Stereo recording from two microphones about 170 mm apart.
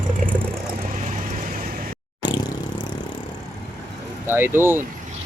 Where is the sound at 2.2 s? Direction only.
25° left (ahead or behind).